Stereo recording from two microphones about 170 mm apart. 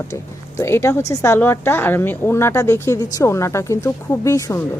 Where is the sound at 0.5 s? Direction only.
15° left (ahead or behind).